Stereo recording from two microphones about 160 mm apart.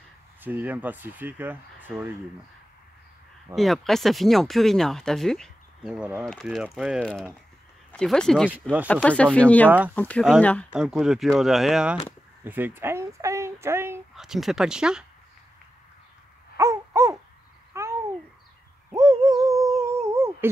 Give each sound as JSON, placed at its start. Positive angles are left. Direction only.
{"t": 0.4, "sound": "speech", "side_deg": -10}
{"t": 3.5, "sound": "speech", "side_deg": 0}
{"t": 5.9, "sound": "speech", "side_deg": -10}
{"t": 7.0, "sound": "speech", "side_deg": 5}
{"t": 9.7, "sound": "speech", "side_deg": -10}
{"t": 9.9, "sound": "speech", "side_deg": 10}
{"t": 10.8, "sound": "speech", "side_deg": -5}
{"t": 12.4, "sound": "a sound", "side_deg": -10}
{"t": 14.1, "sound": "speech", "side_deg": 0}
{"t": 16.5, "sound": "babbling", "side_deg": -15}
{"t": 18.9, "sound": "a sound", "side_deg": -20}